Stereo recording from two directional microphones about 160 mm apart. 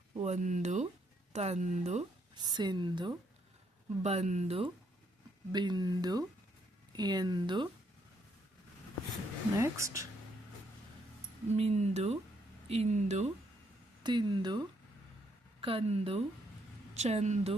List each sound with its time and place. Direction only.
0.2 s speech: 50° right (ahead or behind)
2.3 s speech: 25° right (ahead or behind)
4.0 s speech: 40° right (ahead or behind)
5.5 s speech: 25° right (ahead or behind)
9.6 s speech: 20° right (ahead or behind)
11.5 s speech: 45° right (ahead or behind)
14.0 s speech: 25° right (ahead or behind); by 17.5 s 45° right (ahead or behind)